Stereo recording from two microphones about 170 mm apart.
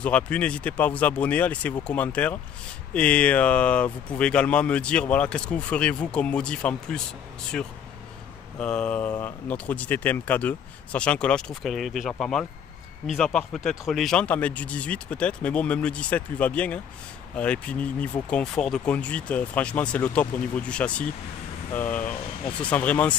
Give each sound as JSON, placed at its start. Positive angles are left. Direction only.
{"t": 0.0, "sound": "speech", "side_deg": 5}
{"t": 8.5, "sound": "speech", "side_deg": 5}